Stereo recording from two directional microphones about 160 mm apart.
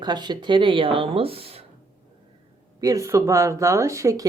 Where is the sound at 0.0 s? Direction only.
25° right (ahead or behind).